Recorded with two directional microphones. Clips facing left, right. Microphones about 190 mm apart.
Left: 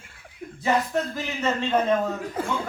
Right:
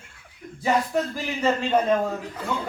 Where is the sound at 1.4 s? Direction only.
10° right (ahead or behind).